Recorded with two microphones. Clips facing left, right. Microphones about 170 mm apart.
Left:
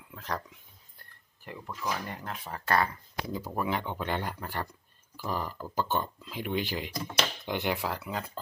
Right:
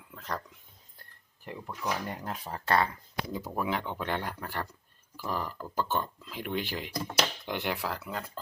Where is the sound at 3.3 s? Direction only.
Centre (ahead or behind).